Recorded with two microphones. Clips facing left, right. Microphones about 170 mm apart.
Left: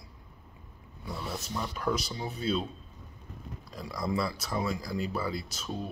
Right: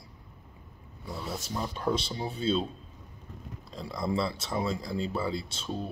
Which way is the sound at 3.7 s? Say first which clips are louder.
Right 1 dB; 25° right (ahead or behind).